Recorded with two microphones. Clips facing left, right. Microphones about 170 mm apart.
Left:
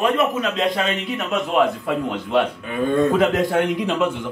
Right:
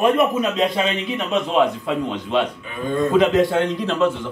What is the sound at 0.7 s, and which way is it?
A man's voice, centre (ahead or behind).